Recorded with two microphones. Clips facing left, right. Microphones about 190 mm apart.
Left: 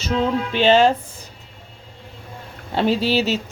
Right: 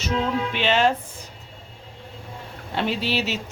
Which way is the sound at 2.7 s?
35° left (ahead or behind).